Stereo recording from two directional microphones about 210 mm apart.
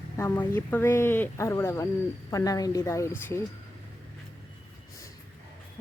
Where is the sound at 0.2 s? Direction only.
10° left (ahead or behind).